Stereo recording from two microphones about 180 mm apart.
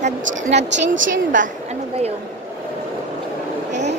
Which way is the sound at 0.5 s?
80° right.